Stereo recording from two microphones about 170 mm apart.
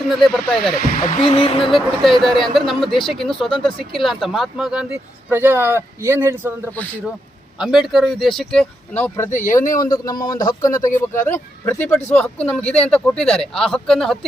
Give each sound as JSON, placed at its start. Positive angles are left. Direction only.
{"t": 0.1, "sound": "speech", "side_deg": 0}
{"t": 1.2, "sound": "a sound", "side_deg": 35}
{"t": 1.7, "sound": "speech", "side_deg": 0}
{"t": 7.6, "sound": "speech", "side_deg": 0}
{"t": 9.3, "sound": "speech", "side_deg": 50}
{"t": 9.7, "sound": "a man's voice", "side_deg": 20}